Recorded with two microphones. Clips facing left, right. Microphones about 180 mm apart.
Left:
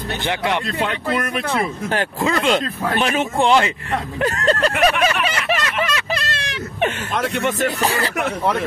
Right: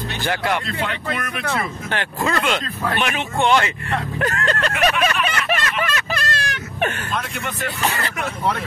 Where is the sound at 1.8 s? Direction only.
40° left (ahead or behind).